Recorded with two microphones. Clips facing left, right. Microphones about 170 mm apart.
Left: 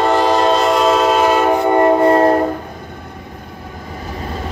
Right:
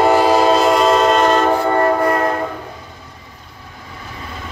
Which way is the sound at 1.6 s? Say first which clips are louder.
Left 4 dB; 20° left (ahead or behind).